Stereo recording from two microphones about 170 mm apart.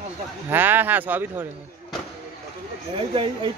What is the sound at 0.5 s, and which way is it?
A man's voice, 10° right (ahead or behind).